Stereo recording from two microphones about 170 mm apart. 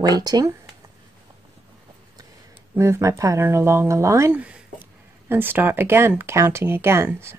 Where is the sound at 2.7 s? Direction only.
15° right (ahead or behind).